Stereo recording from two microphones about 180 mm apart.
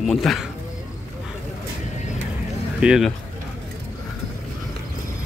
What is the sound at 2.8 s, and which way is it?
Speech, 5° right (ahead or behind).